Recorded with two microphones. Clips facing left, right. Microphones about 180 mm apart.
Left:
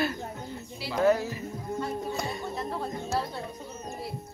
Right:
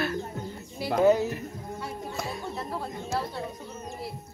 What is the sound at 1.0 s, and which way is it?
Speech, 20° right (ahead or behind).